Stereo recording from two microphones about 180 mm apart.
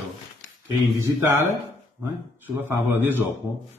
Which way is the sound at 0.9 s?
15° right (ahead or behind).